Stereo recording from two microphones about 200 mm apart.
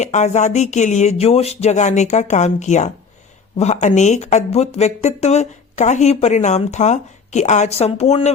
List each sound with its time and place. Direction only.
0.0 s speech: 35° left (ahead or behind)